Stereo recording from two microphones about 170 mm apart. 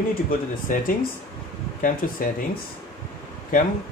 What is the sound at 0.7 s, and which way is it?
Speech, 50° left (ahead or behind).